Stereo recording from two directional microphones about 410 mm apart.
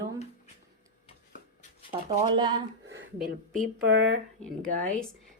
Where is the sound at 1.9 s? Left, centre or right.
Centre.